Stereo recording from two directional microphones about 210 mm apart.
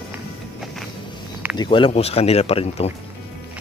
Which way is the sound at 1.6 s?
25° left (ahead or behind).